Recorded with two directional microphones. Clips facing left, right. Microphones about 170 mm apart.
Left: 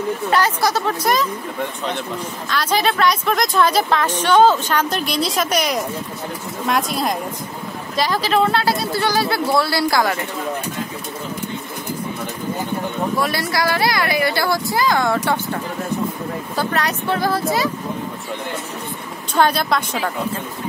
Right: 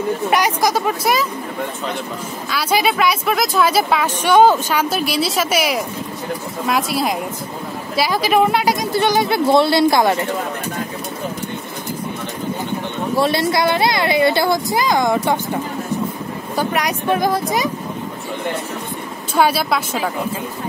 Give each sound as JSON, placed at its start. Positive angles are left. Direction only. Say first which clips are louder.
{"t": 0.3, "sound": "speech", "louder": "even", "side_deg": -15}
{"t": 13.1, "sound": "speech", "louder": "right 9 dB", "side_deg": -25}
{"t": 19.3, "sound": "speech", "louder": "right 1 dB", "side_deg": -5}